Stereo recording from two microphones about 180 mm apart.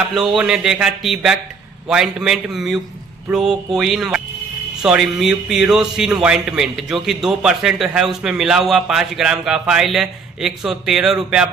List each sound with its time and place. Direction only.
0.1 s a man's voice: centre (ahead or behind)